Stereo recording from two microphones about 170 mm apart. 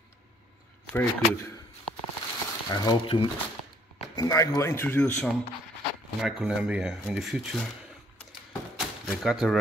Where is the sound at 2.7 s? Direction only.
30° left (ahead or behind); by 7.6 s centre (ahead or behind).